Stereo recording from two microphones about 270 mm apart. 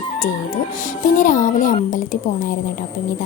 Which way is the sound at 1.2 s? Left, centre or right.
Left.